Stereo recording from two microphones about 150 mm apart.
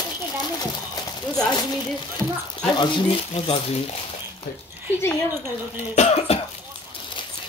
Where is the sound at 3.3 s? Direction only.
45° left (ahead or behind).